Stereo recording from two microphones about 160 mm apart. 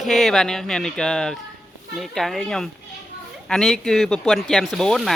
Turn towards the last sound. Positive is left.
turn(degrees=0)  # may be behind; listen again after turning